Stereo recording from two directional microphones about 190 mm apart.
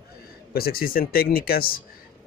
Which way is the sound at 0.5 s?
55° left (ahead or behind).